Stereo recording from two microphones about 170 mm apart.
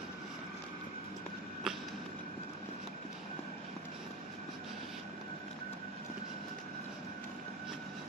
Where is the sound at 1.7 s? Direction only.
5° right (ahead or behind).